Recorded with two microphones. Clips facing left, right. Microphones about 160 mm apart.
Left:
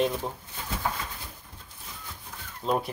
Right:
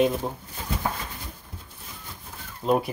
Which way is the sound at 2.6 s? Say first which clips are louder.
Right 4 dB; 10° right (ahead or behind).